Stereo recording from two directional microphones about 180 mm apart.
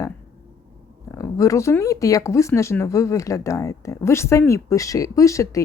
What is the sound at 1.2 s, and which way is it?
Speech, 15° left (ahead or behind).